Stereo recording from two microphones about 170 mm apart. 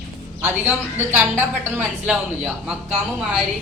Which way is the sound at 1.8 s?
5° right (ahead or behind).